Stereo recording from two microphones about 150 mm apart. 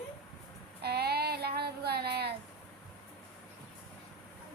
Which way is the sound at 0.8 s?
90° right.